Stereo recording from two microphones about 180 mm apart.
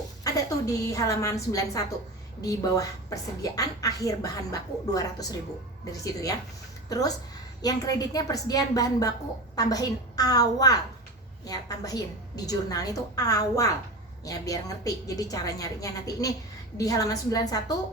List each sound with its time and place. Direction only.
0.3 s a woman's voice: 20° left (ahead or behind)